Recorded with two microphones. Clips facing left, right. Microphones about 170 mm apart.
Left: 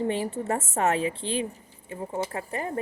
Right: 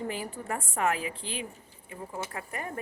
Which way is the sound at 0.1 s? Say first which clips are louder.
Left 7 dB; 25° left (ahead or behind).